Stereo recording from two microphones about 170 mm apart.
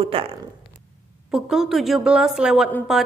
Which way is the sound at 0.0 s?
35° right (ahead or behind).